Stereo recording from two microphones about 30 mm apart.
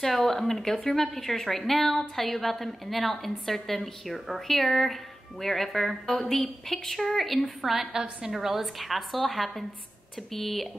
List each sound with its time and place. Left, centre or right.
0.0 s a woman's voice: centre
7.9 s a woman's voice: right
8.3 s a woman's voice: centre